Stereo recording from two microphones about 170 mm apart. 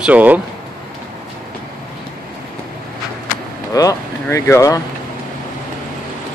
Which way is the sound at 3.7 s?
20° left (ahead or behind).